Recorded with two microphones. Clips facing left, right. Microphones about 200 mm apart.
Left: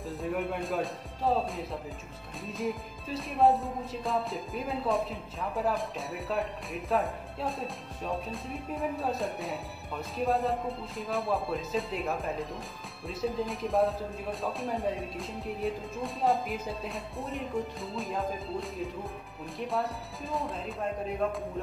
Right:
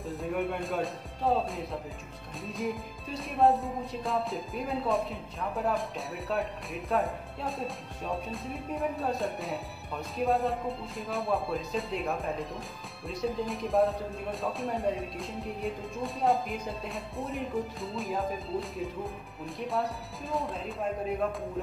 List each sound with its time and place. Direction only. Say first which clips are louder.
0.0 s music: right 1 dB; centre (ahead or behind)